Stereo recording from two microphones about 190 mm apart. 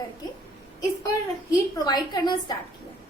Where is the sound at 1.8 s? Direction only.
20° left (ahead or behind).